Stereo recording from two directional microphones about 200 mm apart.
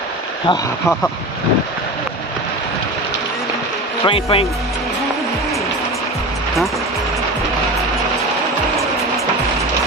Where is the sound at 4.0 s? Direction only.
30° left (ahead or behind).